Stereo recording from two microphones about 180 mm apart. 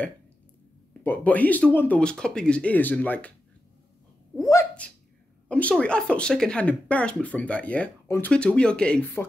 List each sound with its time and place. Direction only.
1.0 s speech: 10° left (ahead or behind)
4.4 s speech: 20° left (ahead or behind)
5.5 s speech: 5° left (ahead or behind)